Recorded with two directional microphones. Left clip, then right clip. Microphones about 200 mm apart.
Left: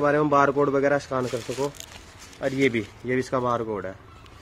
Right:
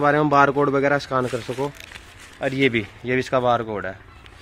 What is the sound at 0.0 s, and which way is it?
Speech, 45° right (ahead or behind).